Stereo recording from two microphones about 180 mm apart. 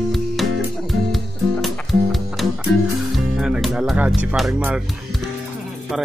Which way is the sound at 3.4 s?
Centre (ahead or behind).